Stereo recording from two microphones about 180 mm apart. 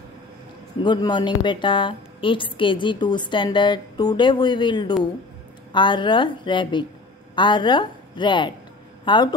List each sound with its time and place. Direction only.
0.8 s a woman's voice: 25° left (ahead or behind)